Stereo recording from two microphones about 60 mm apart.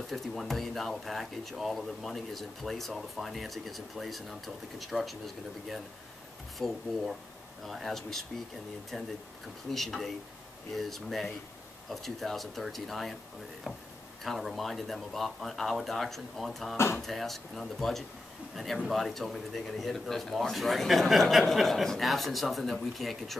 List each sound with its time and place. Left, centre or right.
0.1 s speech: centre
16.7 s speech: left
17.0 s speech: centre